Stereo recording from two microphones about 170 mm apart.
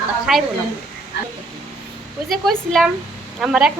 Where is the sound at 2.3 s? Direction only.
Centre (ahead or behind).